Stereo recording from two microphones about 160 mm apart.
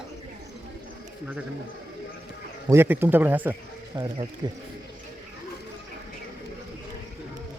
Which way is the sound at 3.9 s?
25° right (ahead or behind).